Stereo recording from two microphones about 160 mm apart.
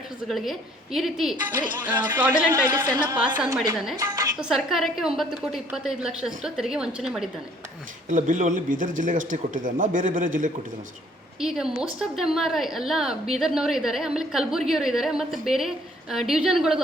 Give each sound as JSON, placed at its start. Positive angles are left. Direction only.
{"t": 0.3, "sound": "a woman's voice", "side_deg": 0}
{"t": 2.5, "sound": "speech", "side_deg": -25}
{"t": 3.9, "sound": "music", "side_deg": -20}
{"t": 4.4, "sound": "a woman's voice", "side_deg": -5}
{"t": 8.1, "sound": "speech", "side_deg": -50}
{"t": 11.3, "sound": "a woman's voice", "side_deg": -5}